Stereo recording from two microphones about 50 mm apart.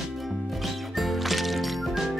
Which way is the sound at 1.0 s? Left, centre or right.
Centre.